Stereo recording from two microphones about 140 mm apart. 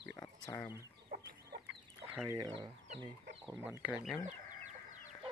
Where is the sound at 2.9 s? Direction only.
30° right (ahead or behind).